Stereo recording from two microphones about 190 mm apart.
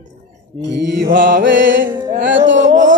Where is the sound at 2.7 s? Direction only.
40° right (ahead or behind).